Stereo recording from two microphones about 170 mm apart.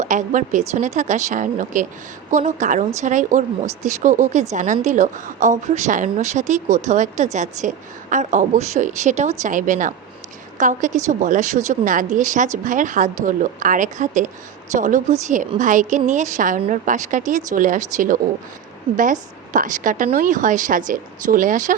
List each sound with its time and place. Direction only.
0.0 s a woman's voice: 45° right (ahead or behind)
19.5 s a woman's voice: 50° right (ahead or behind)